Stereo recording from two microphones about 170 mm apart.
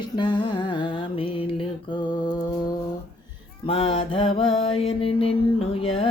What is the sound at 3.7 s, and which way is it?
Mantra, 30° left (ahead or behind).